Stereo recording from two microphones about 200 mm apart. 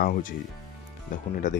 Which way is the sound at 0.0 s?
45° left (ahead or behind).